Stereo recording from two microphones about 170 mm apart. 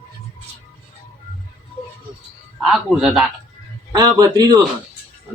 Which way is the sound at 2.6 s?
Centre (ahead or behind).